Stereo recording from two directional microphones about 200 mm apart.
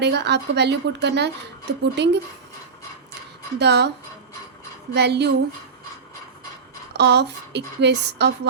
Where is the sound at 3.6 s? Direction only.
55° right (ahead or behind).